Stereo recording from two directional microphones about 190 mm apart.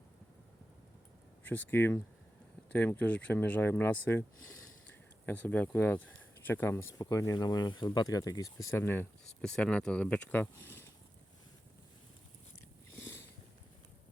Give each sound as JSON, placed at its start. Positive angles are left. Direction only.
{"t": 1.5, "sound": "speech", "side_deg": 10}